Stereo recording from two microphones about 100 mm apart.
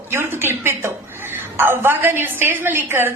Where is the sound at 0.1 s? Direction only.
25° right (ahead or behind).